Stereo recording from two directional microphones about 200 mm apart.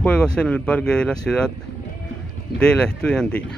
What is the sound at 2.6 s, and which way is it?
Speech, 5° left (ahead or behind).